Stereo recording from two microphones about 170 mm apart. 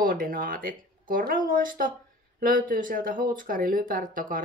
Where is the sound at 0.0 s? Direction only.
55° right (ahead or behind).